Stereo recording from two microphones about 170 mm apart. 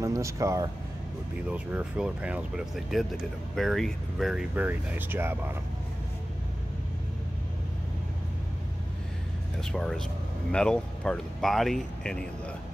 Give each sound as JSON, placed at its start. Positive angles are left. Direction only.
{"t": 0.0, "sound": "speech", "side_deg": -20}
{"t": 1.5, "sound": "speech", "side_deg": -10}
{"t": 9.6, "sound": "speech", "side_deg": 5}